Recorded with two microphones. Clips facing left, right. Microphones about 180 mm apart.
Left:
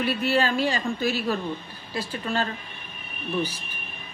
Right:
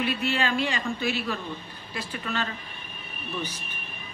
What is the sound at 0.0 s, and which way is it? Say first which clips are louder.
A woman's voice: left 3 dB; 40° left (ahead or behind).